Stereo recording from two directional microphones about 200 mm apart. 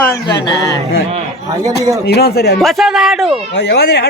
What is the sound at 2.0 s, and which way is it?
Speech, 55° left (ahead or behind).